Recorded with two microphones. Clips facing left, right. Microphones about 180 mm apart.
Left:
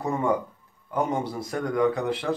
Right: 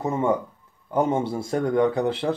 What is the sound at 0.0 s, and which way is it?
Speech, 20° right (ahead or behind).